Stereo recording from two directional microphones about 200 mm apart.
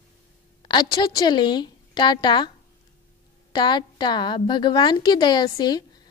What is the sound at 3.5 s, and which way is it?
Speech, 20° left (ahead or behind).